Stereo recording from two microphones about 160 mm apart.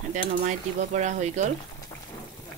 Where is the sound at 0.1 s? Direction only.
50° right (ahead or behind).